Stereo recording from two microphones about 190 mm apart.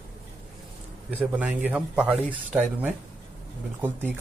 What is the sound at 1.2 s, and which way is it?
Speech, 10° right (ahead or behind).